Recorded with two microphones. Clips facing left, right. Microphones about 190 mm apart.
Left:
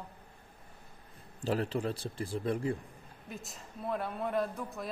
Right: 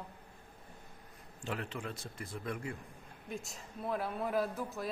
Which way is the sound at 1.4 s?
35° left (ahead or behind).